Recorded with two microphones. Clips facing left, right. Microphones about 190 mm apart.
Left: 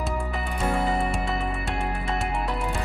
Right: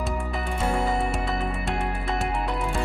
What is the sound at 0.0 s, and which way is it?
Music, centre (ahead or behind).